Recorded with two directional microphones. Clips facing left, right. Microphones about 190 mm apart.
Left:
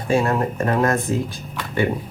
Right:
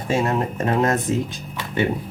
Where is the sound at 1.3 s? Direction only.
20° right (ahead or behind).